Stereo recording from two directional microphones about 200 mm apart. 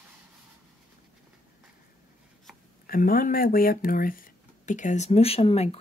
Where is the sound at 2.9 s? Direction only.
45° left (ahead or behind).